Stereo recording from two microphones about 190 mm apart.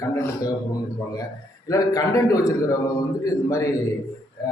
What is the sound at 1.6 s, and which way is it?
A man's voice, 20° left (ahead or behind).